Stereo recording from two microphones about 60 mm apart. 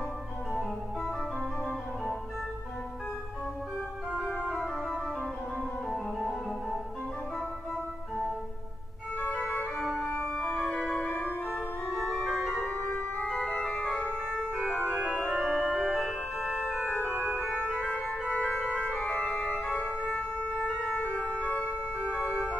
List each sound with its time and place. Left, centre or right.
5.9 s music: centre
9.4 s organ: centre
10.1 s organ: left
10.8 s music: centre
11.1 s organ: left
11.9 s organ: centre
12.3 s organ: centre
12.5 s organ: left
13.3 s organ: centre
14.3 s organ: centre
16.3 s organ: centre
16.6 s organ: right
17.4 s organ: left
22.2 s organ: centre